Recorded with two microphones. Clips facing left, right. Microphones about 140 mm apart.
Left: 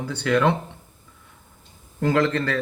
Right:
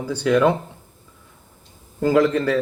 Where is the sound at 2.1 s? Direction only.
10° right (ahead or behind).